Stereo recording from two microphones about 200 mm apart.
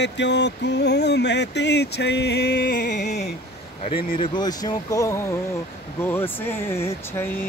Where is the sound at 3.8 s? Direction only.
25° left (ahead or behind).